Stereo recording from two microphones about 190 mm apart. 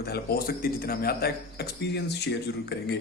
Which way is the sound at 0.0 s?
55° left (ahead or behind).